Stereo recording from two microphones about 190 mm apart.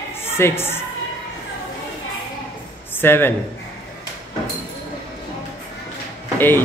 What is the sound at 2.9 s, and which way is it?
Speech, 10° left (ahead or behind).